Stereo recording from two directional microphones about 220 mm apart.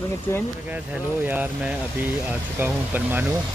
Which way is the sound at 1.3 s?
5° right (ahead or behind).